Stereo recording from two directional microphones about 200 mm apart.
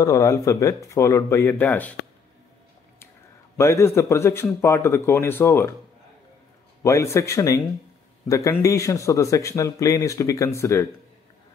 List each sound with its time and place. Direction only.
0.0 s speech: 15° left (ahead or behind)
3.5 s speech: 15° left (ahead or behind)
6.8 s speech: 15° left (ahead or behind)